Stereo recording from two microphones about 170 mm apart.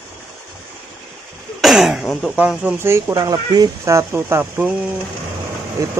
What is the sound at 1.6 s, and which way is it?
Speech, centre (ahead or behind).